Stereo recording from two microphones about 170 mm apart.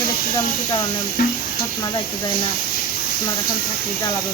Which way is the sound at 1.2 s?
55° left (ahead or behind).